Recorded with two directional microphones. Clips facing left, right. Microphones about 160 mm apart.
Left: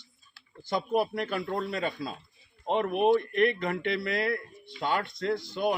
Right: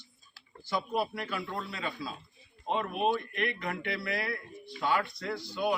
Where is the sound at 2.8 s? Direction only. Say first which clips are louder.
Left 7 dB; 60° left (ahead or behind).